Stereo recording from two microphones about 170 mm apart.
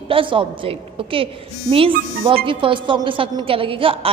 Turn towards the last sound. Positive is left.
turn(degrees=-30)  # may be behind; listen again after turning